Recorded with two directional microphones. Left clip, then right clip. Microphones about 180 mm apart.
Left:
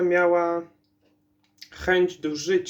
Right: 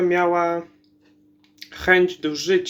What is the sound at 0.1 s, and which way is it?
Speech, 15° right (ahead or behind).